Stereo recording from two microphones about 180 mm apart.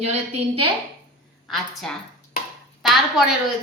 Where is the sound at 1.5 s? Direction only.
Centre (ahead or behind).